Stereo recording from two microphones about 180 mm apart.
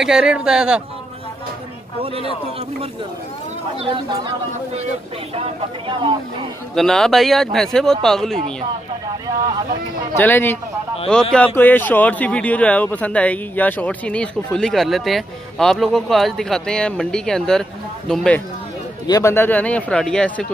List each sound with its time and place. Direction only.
0.0 s speech: 5° right (ahead or behind)
3.8 s speech: 25° right (ahead or behind)
6.7 s speech: centre (ahead or behind)
10.1 s speech: 10° left (ahead or behind)
19.0 s speech: 15° left (ahead or behind)